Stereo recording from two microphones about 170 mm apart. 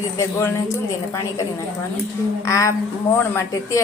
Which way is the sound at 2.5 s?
20° left (ahead or behind).